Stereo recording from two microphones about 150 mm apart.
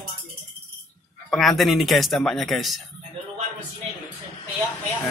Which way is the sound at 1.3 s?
Centre (ahead or behind).